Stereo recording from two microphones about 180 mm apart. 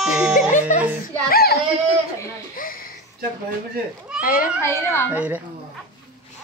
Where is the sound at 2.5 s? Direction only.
50° left (ahead or behind).